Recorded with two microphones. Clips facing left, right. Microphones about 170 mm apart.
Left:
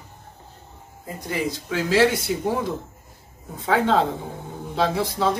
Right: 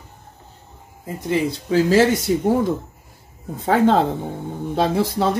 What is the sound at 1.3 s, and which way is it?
Speech, 30° right (ahead or behind).